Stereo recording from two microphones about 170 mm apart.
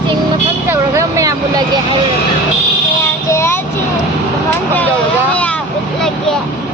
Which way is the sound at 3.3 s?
15° left (ahead or behind).